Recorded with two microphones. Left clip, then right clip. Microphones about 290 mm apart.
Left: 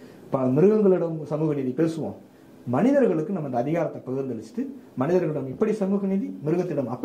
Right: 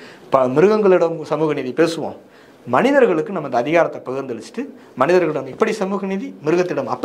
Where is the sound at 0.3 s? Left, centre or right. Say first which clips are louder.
Right 7 dB; centre.